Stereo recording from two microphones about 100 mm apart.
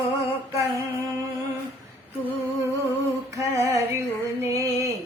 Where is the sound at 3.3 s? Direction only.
30° right (ahead or behind).